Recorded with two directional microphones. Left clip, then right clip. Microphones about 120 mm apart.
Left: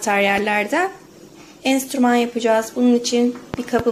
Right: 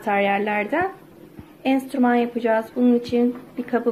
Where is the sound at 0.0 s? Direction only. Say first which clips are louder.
Left 3 dB; 30° left (ahead or behind).